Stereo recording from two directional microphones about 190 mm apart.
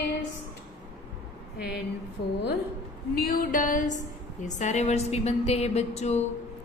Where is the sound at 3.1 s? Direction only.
45° left (ahead or behind).